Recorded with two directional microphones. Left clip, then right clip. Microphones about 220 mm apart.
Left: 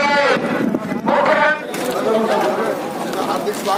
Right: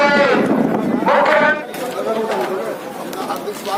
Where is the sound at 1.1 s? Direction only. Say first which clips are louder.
Right 2 dB; centre (ahead or behind).